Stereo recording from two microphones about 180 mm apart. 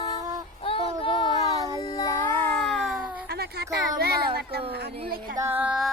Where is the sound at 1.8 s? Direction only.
25° left (ahead or behind).